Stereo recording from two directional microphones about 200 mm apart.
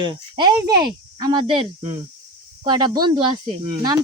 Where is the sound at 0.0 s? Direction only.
25° right (ahead or behind).